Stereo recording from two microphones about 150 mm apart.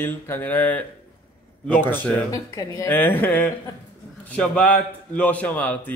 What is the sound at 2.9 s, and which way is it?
Speech, 10° left (ahead or behind).